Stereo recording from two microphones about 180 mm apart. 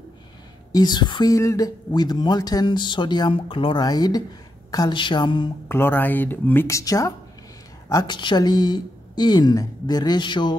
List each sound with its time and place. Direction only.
0.7 s speech: 20° left (ahead or behind)
5.7 s speech: 10° left (ahead or behind)